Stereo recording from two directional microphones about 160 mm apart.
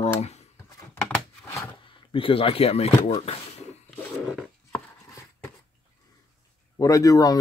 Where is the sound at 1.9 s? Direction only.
35° left (ahead or behind).